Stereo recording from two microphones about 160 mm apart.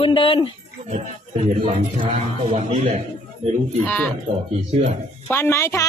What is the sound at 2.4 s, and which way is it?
Speech, 35° right (ahead or behind).